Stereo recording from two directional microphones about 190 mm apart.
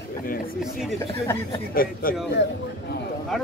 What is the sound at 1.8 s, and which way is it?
Speech, 50° left (ahead or behind).